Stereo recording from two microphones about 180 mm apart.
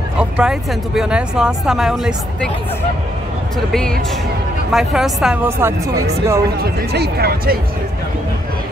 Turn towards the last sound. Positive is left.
turn(degrees=-60)  # may be behind; listen again after turning